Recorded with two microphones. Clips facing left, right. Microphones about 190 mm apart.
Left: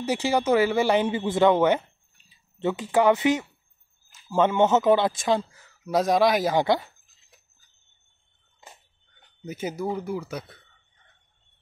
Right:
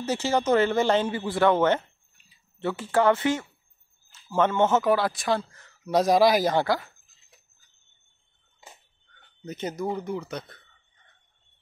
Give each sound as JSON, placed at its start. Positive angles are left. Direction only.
{"t": 0.0, "sound": "speech", "side_deg": 10}
{"t": 5.5, "sound": "speech", "side_deg": 5}
{"t": 6.5, "sound": "speech", "side_deg": 20}
{"t": 9.4, "sound": "speech", "side_deg": 5}